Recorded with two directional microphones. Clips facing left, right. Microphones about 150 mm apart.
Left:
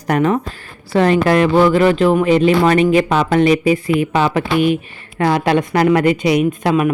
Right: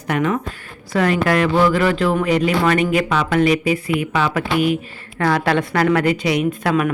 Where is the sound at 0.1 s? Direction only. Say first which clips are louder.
Left 4 dB; 35° left (ahead or behind).